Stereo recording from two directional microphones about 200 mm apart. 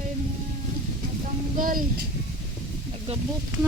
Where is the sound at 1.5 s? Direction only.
45° right (ahead or behind).